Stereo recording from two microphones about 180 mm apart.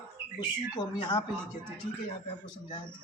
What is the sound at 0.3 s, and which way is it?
Speech, 25° left (ahead or behind).